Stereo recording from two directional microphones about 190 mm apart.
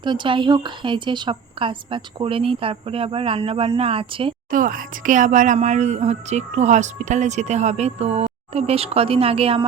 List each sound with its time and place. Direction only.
0.0 s a woman's voice: 25° right (ahead or behind)
4.5 s speech: 45° right (ahead or behind); by 9.6 s 30° right (ahead or behind)